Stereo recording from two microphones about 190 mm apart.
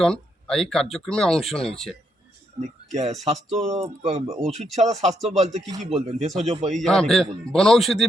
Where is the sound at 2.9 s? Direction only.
35° right (ahead or behind).